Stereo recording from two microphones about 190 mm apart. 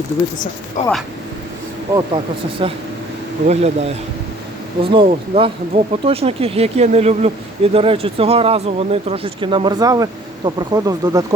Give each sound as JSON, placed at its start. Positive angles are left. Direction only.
{"t": 0.8, "sound": "speech", "side_deg": 40}
{"t": 2.6, "sound": "speech", "side_deg": -25}